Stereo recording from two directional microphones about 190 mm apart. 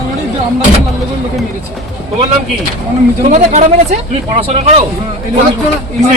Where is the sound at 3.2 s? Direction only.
40° right (ahead or behind).